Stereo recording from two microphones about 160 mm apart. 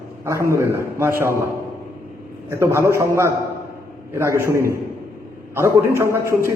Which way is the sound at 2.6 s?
15° right (ahead or behind).